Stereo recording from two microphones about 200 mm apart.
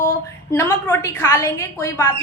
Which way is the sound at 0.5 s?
10° left (ahead or behind).